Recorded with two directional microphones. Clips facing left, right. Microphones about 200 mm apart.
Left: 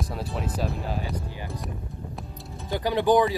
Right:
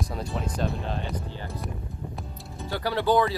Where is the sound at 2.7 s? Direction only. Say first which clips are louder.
Left 3 dB; 15° left (ahead or behind).